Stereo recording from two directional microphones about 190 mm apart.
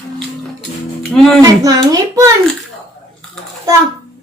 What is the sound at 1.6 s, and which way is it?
Speech, 20° right (ahead or behind).